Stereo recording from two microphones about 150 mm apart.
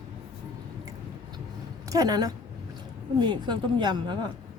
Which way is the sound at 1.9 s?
25° right (ahead or behind).